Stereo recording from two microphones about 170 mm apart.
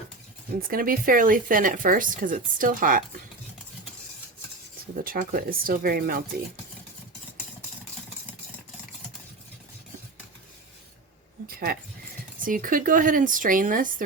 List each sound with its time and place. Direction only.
0.7 s speech: 55° right (ahead or behind)
5.0 s speech: 60° right (ahead or behind)
11.4 s a sound: 60° right (ahead or behind)
12.5 s speech: 55° right (ahead or behind)